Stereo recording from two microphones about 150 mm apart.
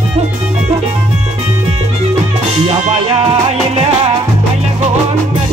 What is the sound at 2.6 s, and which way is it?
Music, 40° right (ahead or behind).